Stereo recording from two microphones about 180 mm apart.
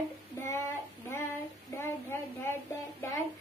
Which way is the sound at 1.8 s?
15° left (ahead or behind).